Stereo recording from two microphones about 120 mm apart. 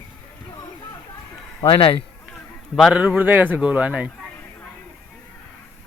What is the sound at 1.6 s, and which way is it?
Speech, 50° left (ahead or behind).